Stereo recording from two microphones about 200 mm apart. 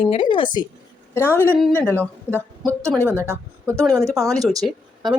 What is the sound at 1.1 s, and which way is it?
Speech, 10° left (ahead or behind).